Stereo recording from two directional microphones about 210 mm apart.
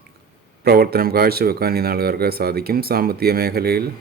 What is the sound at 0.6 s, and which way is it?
Speech, 50° right (ahead or behind).